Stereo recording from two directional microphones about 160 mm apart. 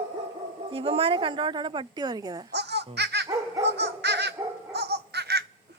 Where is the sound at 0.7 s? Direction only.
35° right (ahead or behind).